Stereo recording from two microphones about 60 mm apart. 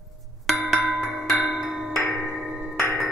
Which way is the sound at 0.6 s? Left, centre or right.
Left.